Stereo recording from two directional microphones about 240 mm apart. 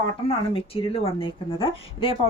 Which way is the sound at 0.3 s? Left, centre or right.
Left.